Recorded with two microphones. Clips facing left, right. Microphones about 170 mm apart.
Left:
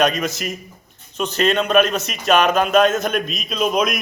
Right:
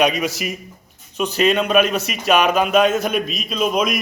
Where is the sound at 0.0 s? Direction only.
10° right (ahead or behind).